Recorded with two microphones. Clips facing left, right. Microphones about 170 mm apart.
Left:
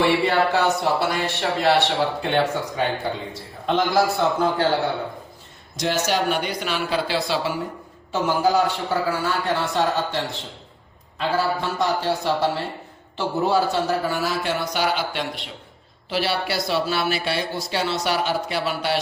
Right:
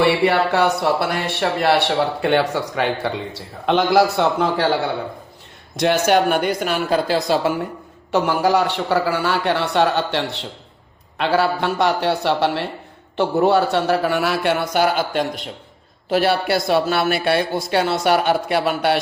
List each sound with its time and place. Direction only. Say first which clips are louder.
0.0 s speech: right 3 dB; 65° right (ahead or behind)
2.3 s a man's voice: right 3 dB; 70° right (ahead or behind)
5.7 s speech: right 7 dB; 60° right (ahead or behind); by 7.2 s 45° right (ahead or behind)
8.1 s a man's voice: right 3 dB; 70° right (ahead or behind)